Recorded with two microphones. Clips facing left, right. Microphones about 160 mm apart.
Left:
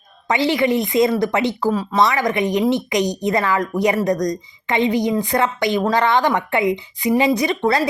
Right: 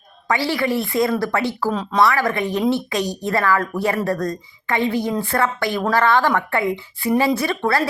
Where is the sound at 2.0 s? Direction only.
20° left (ahead or behind).